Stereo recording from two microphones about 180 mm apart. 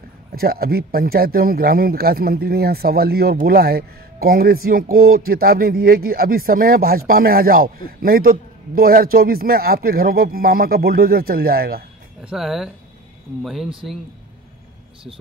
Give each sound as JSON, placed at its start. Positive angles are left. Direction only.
{"t": 0.3, "sound": "speech", "side_deg": -60}
{"t": 12.2, "sound": "speech", "side_deg": -5}